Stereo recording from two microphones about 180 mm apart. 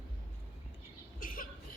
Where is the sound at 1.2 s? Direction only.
50° left (ahead or behind).